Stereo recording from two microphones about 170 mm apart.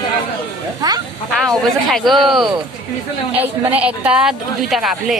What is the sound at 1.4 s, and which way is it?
A woman's voice, centre (ahead or behind).